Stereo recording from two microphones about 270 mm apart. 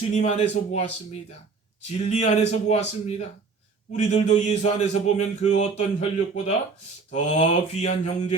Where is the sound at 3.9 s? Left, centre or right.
Left.